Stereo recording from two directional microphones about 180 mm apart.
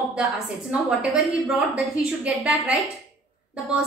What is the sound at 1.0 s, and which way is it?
A woman's voice, centre (ahead or behind).